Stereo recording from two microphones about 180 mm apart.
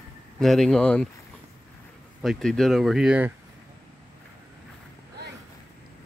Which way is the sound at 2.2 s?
Centre (ahead or behind).